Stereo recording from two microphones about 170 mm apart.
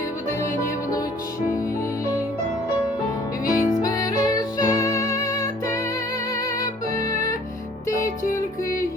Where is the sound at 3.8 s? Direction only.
20° left (ahead or behind).